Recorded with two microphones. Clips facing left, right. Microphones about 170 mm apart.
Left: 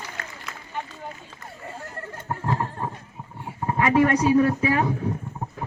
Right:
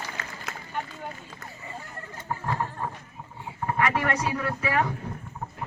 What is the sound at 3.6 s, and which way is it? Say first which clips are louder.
A woman's voice: left 6 dB; 25° left (ahead or behind).